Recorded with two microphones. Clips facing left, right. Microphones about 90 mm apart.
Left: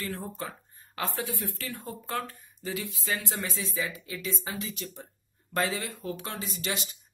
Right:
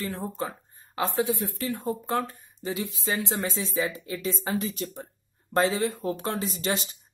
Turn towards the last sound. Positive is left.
turn(degrees=-35)  # may be behind; listen again after turning